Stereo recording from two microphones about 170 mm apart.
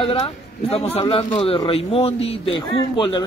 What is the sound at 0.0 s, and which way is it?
A man's voice, 35° left (ahead or behind).